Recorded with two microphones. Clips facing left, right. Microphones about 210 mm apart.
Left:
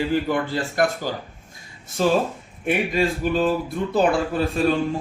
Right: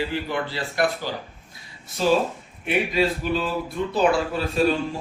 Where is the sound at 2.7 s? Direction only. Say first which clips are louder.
Left 1 dB; 50° left (ahead or behind).